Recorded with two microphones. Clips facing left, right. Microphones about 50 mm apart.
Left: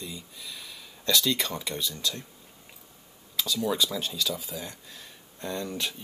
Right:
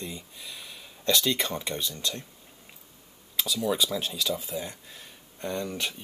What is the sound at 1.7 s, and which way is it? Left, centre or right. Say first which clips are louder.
Speech: even; right.